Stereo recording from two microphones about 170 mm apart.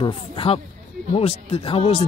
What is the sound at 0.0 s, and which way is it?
Speech, 30° left (ahead or behind).